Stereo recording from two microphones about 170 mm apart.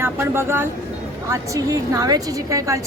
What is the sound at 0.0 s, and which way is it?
Speech, 15° right (ahead or behind).